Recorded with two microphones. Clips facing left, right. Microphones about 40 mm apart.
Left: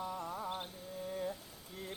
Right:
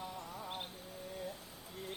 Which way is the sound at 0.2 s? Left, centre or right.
Left.